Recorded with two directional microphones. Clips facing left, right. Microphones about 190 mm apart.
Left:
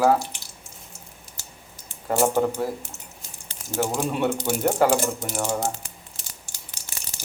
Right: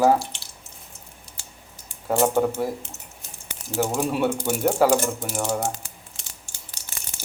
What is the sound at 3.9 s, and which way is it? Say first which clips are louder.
Speech: right 1 dB; centre (ahead or behind).